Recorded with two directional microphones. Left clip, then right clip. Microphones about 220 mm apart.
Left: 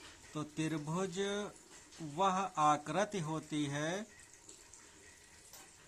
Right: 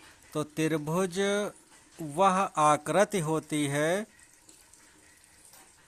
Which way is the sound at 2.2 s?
40° right (ahead or behind).